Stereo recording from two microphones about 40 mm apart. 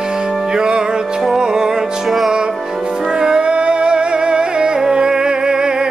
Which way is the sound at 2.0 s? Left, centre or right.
Centre.